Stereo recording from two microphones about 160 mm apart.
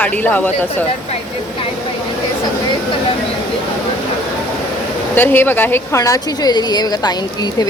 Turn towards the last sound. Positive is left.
turn(degrees=25)  # may be behind; listen again after turning